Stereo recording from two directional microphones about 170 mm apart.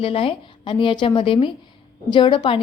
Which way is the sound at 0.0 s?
35° left (ahead or behind).